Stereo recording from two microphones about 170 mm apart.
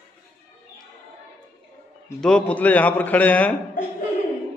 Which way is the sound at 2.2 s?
5° left (ahead or behind).